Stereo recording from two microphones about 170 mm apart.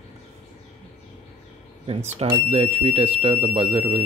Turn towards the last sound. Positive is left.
turn(degrees=-35)  # may be behind; listen again after turning